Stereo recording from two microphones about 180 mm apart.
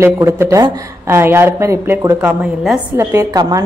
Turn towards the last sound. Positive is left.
turn(degrees=-20)  # may be behind; listen again after turning